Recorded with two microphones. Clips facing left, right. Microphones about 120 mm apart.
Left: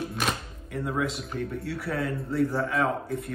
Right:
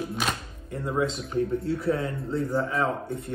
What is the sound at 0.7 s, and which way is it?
Speech, 30° right (ahead or behind).